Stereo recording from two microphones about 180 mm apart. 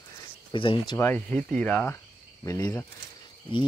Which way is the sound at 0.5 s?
25° left (ahead or behind).